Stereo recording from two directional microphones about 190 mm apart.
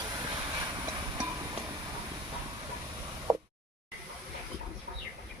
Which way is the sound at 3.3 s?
20° right (ahead or behind).